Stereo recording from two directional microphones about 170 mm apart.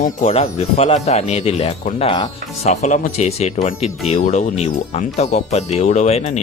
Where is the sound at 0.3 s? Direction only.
35° left (ahead or behind).